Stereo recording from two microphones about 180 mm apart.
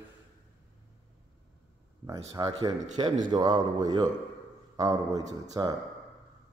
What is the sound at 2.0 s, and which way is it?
Speech, 20° right (ahead or behind).